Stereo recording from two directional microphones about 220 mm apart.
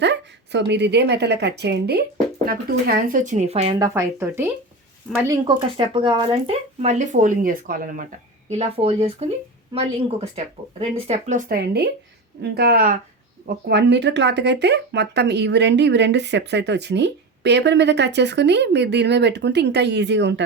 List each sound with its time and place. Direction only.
0.0 s speech: 50° right (ahead or behind); by 3.8 s 30° right (ahead or behind)
3.8 s speech: 15° right (ahead or behind); by 8.0 s 40° right (ahead or behind)
8.4 s speech: 25° right (ahead or behind); by 20.4 s 50° right (ahead or behind)